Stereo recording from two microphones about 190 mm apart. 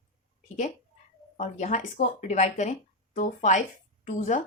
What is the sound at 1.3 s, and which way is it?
A woman's voice, 40° left (ahead or behind).